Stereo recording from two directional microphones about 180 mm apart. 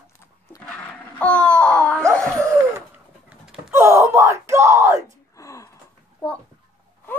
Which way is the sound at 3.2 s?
5° right (ahead or behind).